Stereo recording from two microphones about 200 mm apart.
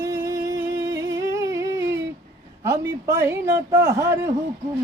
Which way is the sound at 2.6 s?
15° right (ahead or behind).